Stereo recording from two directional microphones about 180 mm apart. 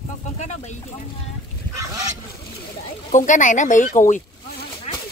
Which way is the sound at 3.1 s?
45° left (ahead or behind).